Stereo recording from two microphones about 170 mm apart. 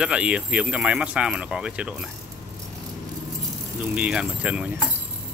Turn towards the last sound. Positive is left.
turn(degrees=-5)  # may be behind; listen again after turning